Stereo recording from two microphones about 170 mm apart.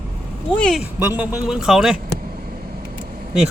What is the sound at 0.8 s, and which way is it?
Speech, 10° right (ahead or behind).